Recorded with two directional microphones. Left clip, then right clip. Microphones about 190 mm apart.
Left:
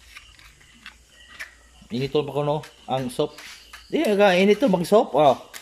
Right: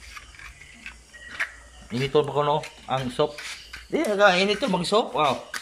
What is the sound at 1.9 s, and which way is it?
Speech, 25° left (ahead or behind).